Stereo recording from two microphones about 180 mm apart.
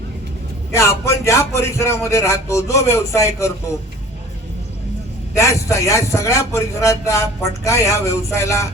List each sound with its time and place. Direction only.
0.7 s a man's voice: 15° left (ahead or behind)
5.3 s a man's voice: 15° left (ahead or behind)